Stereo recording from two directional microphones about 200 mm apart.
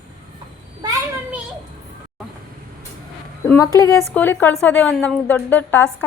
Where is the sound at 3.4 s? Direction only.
15° left (ahead or behind).